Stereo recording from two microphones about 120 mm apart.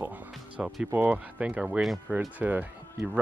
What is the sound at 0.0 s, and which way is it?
Music, 15° right (ahead or behind).